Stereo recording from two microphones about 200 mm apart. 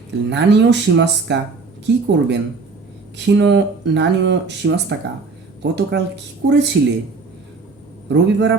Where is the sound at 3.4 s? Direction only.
60° right (ahead or behind).